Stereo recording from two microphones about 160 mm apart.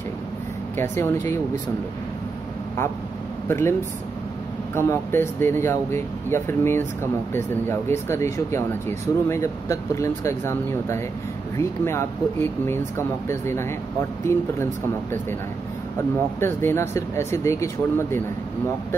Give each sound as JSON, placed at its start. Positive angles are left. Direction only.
{"t": 0.7, "sound": "speech", "side_deg": 15}
{"t": 3.4, "sound": "speech", "side_deg": 15}
{"t": 4.7, "sound": "speech", "side_deg": 15}
{"t": 16.3, "sound": "speech", "side_deg": 15}